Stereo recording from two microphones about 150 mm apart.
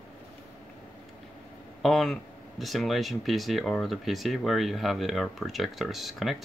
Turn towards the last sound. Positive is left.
turn(degrees=0)  # may be behind; listen again after turning